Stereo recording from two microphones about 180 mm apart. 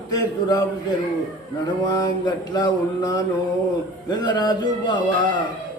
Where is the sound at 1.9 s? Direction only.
20° left (ahead or behind).